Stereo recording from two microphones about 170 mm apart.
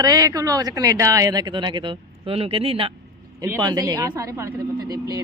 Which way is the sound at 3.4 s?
20° right (ahead or behind).